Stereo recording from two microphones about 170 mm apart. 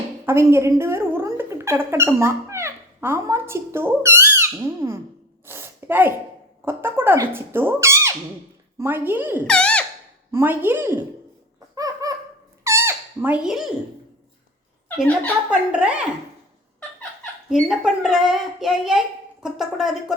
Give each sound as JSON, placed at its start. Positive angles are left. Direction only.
{"t": 0.3, "sound": "speech", "side_deg": -15}
{"t": 5.5, "sound": "a sound", "side_deg": -15}
{"t": 6.7, "sound": "speech", "side_deg": -15}
{"t": 9.5, "sound": "a child's voice", "side_deg": 5}
{"t": 10.3, "sound": "speech", "side_deg": -10}
{"t": 11.7, "sound": "a sound", "side_deg": -20}
{"t": 12.6, "sound": "squeak", "side_deg": -15}
{"t": 15.4, "sound": "speech", "side_deg": -5}
{"t": 17.5, "sound": "a child's voice", "side_deg": 0}